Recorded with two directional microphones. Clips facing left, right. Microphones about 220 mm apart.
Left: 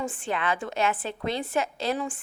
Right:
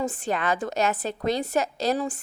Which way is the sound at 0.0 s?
40° right (ahead or behind).